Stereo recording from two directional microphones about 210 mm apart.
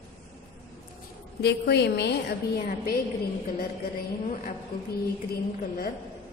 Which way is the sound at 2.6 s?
40° left (ahead or behind).